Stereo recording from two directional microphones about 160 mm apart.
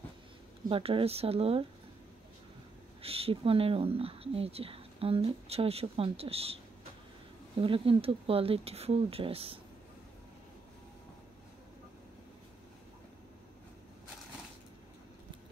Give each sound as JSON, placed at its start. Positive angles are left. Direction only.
{"t": 0.7, "sound": "speech", "side_deg": -35}
{"t": 3.0, "sound": "speech", "side_deg": -35}
{"t": 7.6, "sound": "speech", "side_deg": -35}